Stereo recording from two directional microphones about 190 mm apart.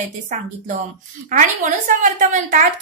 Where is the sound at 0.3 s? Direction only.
45° right (ahead or behind).